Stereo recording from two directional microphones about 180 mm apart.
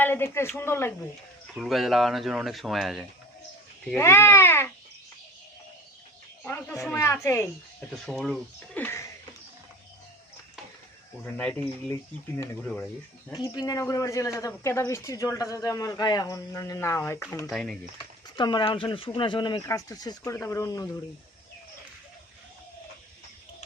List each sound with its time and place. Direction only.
0.0 s speech: 10° left (ahead or behind)
1.5 s speech: centre (ahead or behind)
3.9 s speech: 15° left (ahead or behind)
6.4 s speech: 10° left (ahead or behind)
8.0 s speech: centre (ahead or behind)
11.3 s speech: 10° left (ahead or behind)
12.6 s speech: 5° left (ahead or behind)
13.3 s speech: 20° left (ahead or behind)
17.5 s speech: centre (ahead or behind)
17.9 s speech: 25° left (ahead or behind)